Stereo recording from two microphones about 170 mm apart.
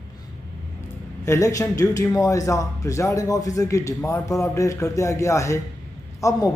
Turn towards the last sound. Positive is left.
turn(degrees=20)  # may be behind; listen again after turning